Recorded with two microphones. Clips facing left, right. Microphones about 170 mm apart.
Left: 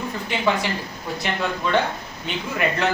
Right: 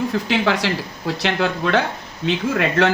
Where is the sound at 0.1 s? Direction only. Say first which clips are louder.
Right 4 dB; 90° right.